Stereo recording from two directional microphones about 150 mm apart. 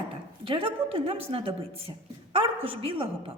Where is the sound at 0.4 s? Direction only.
35° right (ahead or behind).